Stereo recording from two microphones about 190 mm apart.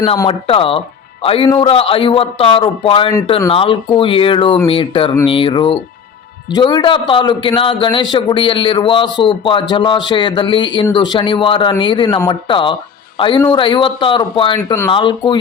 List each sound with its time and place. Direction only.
0.3 s a man's voice: 30° left (ahead or behind)